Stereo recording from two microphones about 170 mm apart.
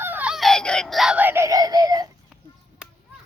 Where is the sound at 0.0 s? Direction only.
10° right (ahead or behind).